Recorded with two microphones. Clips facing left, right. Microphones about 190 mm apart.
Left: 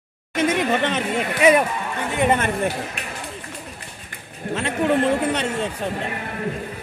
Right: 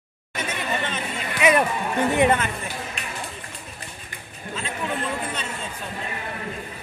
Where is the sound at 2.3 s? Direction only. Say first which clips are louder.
Left 6 dB; 60° left (ahead or behind).